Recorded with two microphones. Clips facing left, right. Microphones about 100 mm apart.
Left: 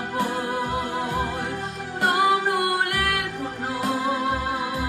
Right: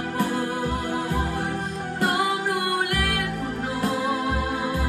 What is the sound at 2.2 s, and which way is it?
Music, 20° left (ahead or behind).